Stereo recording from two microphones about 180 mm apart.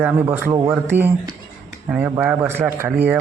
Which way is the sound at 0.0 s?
10° right (ahead or behind).